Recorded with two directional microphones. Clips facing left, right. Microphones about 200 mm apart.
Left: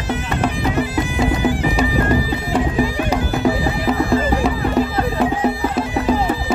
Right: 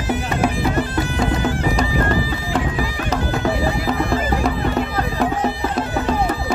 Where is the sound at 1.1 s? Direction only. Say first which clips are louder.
Left 3 dB; 10° left (ahead or behind).